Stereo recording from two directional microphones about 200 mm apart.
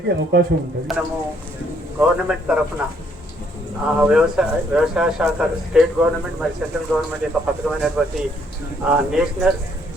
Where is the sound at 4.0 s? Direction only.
5° right (ahead or behind).